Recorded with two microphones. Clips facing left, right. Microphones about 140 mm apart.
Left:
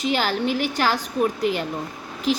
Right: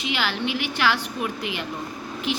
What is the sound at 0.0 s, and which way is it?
A woman's voice, 40° left (ahead or behind).